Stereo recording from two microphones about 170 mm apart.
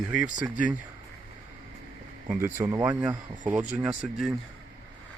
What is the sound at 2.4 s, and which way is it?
Speech, 15° right (ahead or behind).